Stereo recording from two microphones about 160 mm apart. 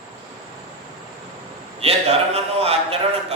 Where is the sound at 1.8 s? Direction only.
40° right (ahead or behind).